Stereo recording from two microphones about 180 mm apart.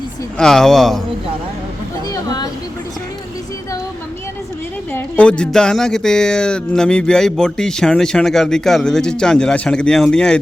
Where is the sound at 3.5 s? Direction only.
20° left (ahead or behind).